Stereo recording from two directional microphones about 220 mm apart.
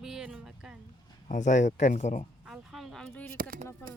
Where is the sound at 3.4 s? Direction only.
40° right (ahead or behind).